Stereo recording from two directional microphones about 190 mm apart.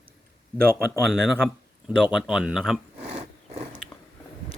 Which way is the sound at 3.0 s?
35° right (ahead or behind).